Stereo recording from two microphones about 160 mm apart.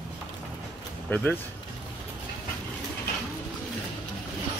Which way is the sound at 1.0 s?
10° left (ahead or behind).